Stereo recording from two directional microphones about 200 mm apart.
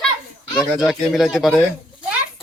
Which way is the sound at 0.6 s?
Centre (ahead or behind).